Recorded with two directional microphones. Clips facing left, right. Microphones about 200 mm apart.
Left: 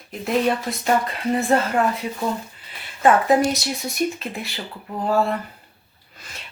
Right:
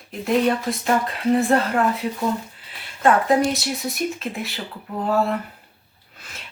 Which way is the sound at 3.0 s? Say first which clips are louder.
Left 1 dB; centre (ahead or behind).